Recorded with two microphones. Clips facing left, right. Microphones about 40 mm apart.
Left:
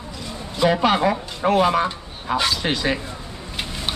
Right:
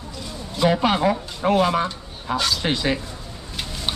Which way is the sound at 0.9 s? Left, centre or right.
Centre.